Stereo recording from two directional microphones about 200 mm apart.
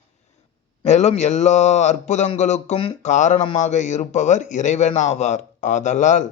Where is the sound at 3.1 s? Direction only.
35° left (ahead or behind).